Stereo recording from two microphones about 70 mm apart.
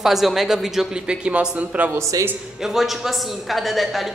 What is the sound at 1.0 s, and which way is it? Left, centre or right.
Speech, centre.